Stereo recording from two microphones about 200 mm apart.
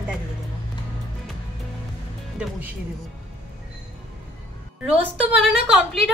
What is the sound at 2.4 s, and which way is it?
Speech, 10° right (ahead or behind).